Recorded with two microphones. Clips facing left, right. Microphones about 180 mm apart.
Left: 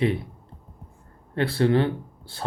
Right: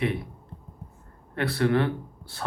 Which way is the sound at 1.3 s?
30° left (ahead or behind).